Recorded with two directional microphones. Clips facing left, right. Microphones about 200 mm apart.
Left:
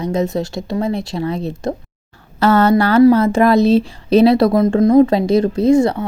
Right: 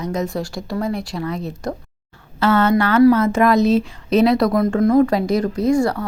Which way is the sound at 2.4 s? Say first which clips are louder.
Left 3 dB; 40° left (ahead or behind).